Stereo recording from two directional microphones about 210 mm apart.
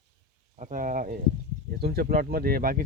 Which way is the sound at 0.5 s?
35° right (ahead or behind).